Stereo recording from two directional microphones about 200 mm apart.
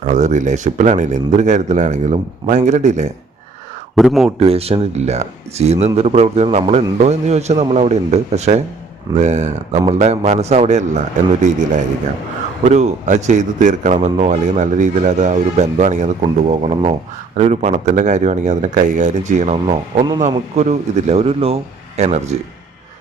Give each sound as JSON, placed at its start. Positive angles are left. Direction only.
{"t": 0.0, "sound": "speech", "side_deg": -35}
{"t": 3.9, "sound": "speech", "side_deg": 0}
{"t": 4.4, "sound": "speech", "side_deg": -30}
{"t": 12.6, "sound": "speech", "side_deg": -35}